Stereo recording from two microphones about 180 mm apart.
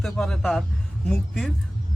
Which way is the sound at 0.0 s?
Centre (ahead or behind).